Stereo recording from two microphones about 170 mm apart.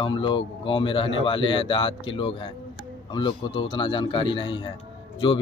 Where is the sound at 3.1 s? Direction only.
30° left (ahead or behind).